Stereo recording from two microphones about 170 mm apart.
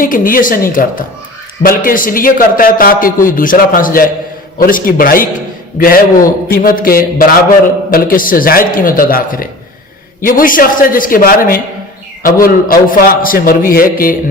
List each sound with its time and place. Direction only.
0.0 s a man's voice: 55° left (ahead or behind)
12.6 s a man's voice: 55° left (ahead or behind)